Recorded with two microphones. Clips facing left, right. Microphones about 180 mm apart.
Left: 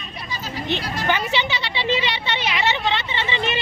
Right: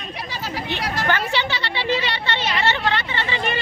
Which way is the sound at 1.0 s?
15° left (ahead or behind).